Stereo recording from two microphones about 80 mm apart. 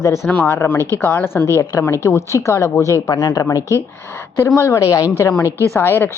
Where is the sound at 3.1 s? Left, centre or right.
Left.